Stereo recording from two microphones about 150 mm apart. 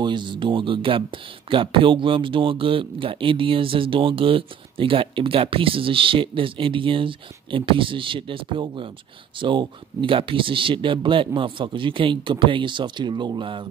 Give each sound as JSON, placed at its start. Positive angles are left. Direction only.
{"t": 0.0, "sound": "speech", "side_deg": -30}